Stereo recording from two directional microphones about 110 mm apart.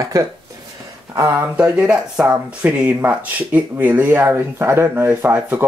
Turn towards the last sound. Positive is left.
turn(degrees=-15)  # may be behind; listen again after turning